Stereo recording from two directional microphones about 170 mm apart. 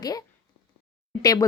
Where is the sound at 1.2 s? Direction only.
20° left (ahead or behind).